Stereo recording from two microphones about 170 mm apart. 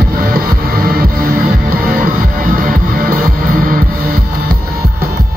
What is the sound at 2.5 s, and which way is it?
Music, 55° right (ahead or behind).